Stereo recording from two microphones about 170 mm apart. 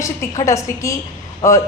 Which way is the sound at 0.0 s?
20° left (ahead or behind).